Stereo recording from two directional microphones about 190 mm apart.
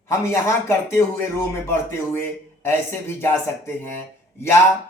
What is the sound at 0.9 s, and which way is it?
Speech, 15° left (ahead or behind).